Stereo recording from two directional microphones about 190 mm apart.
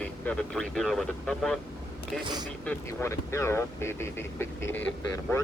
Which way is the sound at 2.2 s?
20° right (ahead or behind).